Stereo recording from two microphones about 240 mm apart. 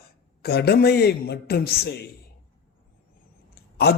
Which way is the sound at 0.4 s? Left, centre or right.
Left.